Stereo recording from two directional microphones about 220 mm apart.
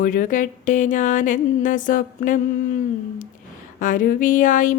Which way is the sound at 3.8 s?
35° left (ahead or behind).